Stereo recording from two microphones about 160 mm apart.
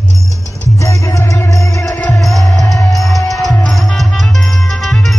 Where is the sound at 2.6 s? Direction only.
Centre (ahead or behind).